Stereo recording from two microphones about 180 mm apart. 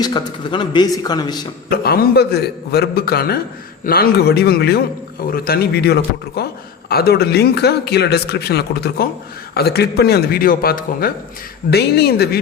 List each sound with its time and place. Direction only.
0.0 s speech: 25° left (ahead or behind)
1.7 s a man's voice: 60° left (ahead or behind)